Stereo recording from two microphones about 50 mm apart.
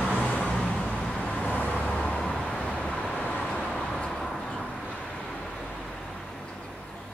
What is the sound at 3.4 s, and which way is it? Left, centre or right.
Vehicle, centre.